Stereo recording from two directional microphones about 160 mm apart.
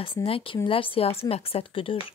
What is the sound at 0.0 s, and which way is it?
Speech, 35° left (ahead or behind).